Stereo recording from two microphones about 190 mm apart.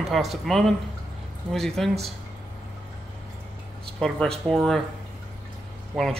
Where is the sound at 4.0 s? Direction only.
Centre (ahead or behind).